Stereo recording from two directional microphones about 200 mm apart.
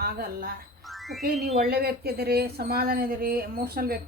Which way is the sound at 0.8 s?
Centre (ahead or behind).